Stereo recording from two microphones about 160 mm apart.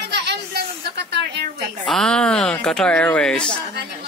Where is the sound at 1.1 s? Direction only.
90° right.